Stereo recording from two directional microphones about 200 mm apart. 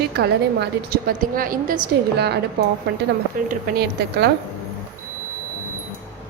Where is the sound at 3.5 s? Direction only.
50° right (ahead or behind).